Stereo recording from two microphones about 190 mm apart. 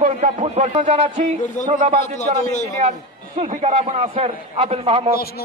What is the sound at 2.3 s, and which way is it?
Speech, 40° right (ahead or behind).